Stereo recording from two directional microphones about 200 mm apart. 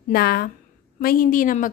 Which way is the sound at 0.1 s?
50° left (ahead or behind).